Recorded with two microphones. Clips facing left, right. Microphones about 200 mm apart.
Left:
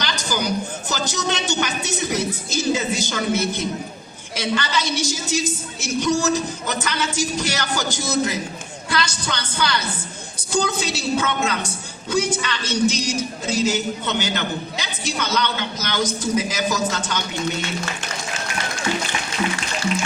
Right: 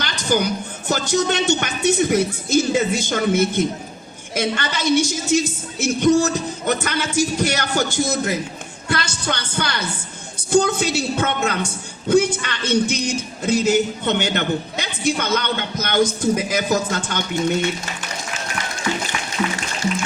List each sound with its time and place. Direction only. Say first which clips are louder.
0.0 s a woman's voice: right 4 dB; 55° right (ahead or behind)